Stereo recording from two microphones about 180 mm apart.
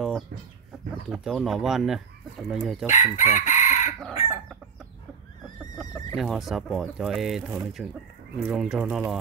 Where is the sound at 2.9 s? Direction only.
40° left (ahead or behind).